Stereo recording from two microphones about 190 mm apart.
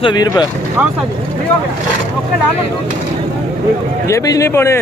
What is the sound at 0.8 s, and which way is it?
Speech, 5° right (ahead or behind).